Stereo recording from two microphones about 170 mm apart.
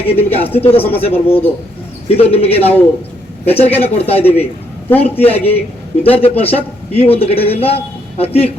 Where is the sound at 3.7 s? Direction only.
35° left (ahead or behind).